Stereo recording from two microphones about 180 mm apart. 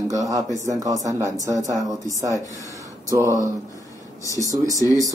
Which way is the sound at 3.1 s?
15° right (ahead or behind).